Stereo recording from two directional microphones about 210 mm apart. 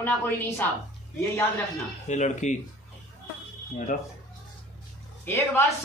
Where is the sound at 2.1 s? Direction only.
35° left (ahead or behind).